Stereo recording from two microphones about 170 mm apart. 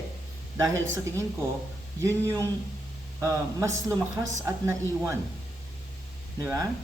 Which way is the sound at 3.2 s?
20° right (ahead or behind).